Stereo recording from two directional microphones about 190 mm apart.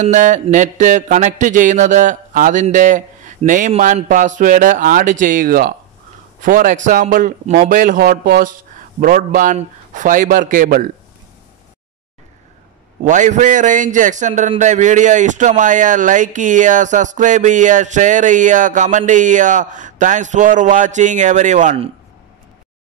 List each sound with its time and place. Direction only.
0.0 s a man's voice: 40° right (ahead or behind)
13.0 s speech: 40° right (ahead or behind)